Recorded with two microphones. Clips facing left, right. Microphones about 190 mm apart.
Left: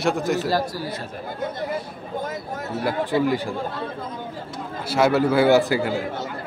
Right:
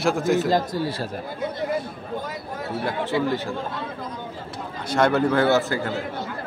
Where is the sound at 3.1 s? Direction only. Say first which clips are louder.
Left 3 dB; 40° left (ahead or behind).